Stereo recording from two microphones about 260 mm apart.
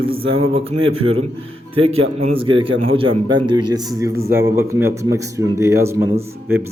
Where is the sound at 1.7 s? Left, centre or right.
Right.